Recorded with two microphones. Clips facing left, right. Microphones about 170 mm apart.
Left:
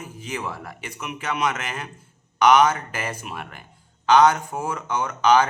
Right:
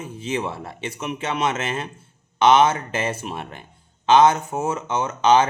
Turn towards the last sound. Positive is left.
turn(degrees=-25)  # may be behind; listen again after turning